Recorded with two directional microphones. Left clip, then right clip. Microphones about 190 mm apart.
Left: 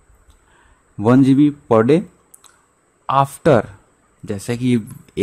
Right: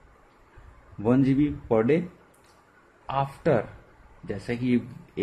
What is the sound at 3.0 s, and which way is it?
Speech, 55° left (ahead or behind).